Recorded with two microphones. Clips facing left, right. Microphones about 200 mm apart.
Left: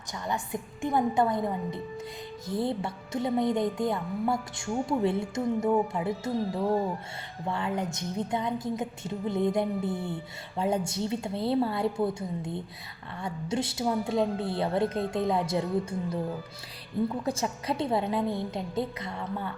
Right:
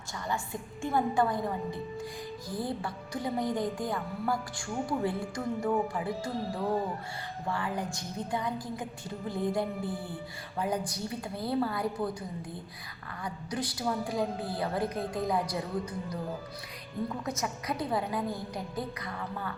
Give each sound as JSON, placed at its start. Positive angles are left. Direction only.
{"t": 0.1, "sound": "speech", "side_deg": 20}
{"t": 17.2, "sound": "speech", "side_deg": 30}